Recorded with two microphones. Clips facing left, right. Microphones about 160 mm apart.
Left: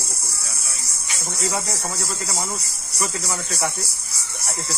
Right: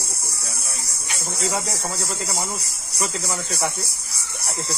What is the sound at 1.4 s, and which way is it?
Speech, 20° right (ahead or behind).